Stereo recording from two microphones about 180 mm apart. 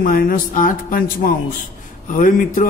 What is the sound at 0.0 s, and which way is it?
A man's voice, 50° left (ahead or behind).